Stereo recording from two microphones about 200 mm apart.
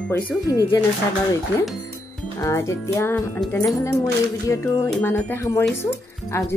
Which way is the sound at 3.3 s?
Centre (ahead or behind).